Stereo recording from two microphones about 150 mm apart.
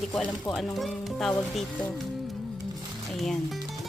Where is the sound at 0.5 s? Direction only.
Centre (ahead or behind).